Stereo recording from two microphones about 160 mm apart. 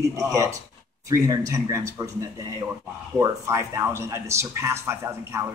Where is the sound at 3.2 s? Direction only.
20° right (ahead or behind).